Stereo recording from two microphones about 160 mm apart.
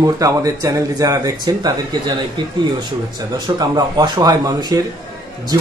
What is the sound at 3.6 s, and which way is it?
Speech, 25° right (ahead or behind).